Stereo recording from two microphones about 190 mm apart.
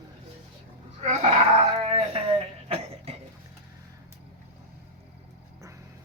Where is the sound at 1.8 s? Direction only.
30° right (ahead or behind).